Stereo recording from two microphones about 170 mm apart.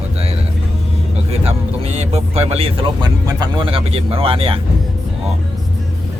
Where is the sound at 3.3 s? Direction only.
25° right (ahead or behind).